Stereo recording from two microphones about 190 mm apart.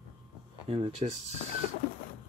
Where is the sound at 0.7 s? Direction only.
30° right (ahead or behind).